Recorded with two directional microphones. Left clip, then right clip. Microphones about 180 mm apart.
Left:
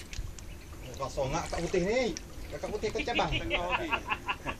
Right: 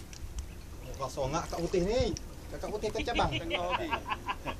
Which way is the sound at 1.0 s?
10° right (ahead or behind).